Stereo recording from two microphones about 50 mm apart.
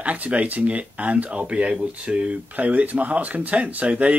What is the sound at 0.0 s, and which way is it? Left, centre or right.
Speech, right.